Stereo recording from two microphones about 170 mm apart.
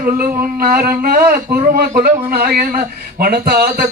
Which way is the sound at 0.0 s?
60° right (ahead or behind).